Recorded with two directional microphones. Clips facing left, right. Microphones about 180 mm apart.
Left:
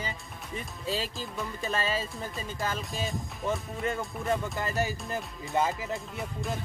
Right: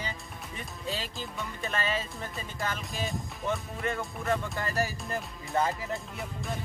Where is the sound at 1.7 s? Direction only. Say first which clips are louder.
Left 1 dB; 30° left (ahead or behind).